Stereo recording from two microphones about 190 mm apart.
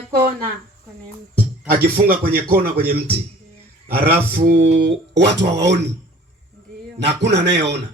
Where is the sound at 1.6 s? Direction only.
50° right (ahead or behind).